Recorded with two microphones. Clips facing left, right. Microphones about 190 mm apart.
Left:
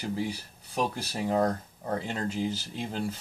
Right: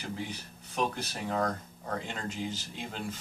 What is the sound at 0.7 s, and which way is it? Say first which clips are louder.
Speech: left 2 dB; 35° left (ahead or behind).